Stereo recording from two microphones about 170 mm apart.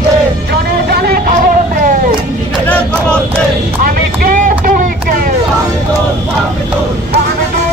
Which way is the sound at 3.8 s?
60° right (ahead or behind).